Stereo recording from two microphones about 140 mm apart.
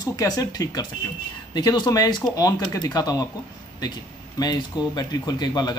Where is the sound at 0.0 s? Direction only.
25° left (ahead or behind).